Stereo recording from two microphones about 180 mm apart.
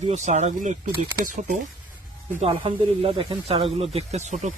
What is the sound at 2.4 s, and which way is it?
Speech, 30° right (ahead or behind).